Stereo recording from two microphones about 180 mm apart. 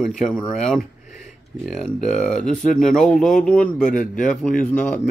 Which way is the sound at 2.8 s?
5° left (ahead or behind).